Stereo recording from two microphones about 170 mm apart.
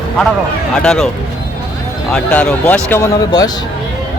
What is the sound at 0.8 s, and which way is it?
Speech, 5° left (ahead or behind).